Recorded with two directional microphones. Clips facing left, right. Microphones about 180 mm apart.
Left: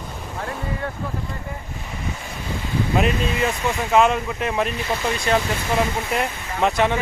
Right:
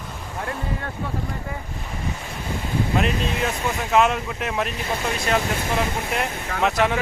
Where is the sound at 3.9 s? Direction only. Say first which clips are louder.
Left 2 dB; centre (ahead or behind).